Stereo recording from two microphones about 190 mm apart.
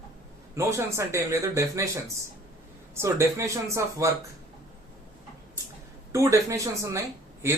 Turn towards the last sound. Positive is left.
turn(degrees=-15)  # may be behind; listen again after turning